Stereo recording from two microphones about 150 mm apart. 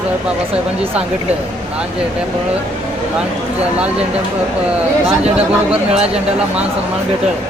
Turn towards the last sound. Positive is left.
turn(degrees=-10)  # may be behind; listen again after turning